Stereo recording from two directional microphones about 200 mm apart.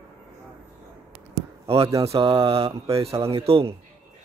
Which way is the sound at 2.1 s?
25° right (ahead or behind).